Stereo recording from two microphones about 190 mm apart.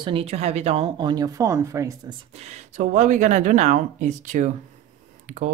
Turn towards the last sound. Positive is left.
turn(degrees=-40)  # may be behind; listen again after turning